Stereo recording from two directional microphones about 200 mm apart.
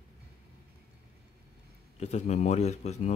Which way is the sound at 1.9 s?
35° left (ahead or behind).